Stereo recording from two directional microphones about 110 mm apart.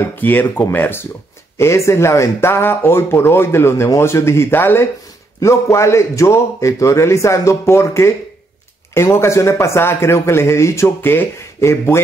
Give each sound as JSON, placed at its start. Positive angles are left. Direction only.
{"t": 0.2, "sound": "speech", "side_deg": 15}